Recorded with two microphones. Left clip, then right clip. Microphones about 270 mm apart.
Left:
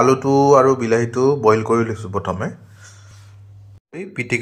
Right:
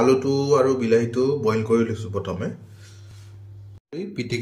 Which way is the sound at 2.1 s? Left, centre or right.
Left.